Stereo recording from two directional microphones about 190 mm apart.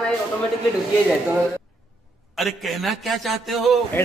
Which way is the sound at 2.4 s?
Centre (ahead or behind).